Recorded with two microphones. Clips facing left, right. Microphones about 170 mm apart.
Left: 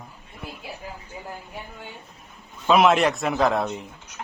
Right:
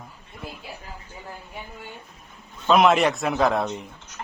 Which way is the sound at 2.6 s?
5° left (ahead or behind).